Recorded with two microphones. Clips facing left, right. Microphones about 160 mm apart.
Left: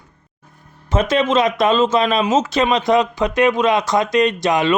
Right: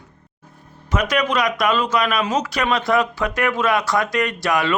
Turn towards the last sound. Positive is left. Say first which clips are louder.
# left 4 dB
turn(degrees=20)  # may be behind; listen again after turning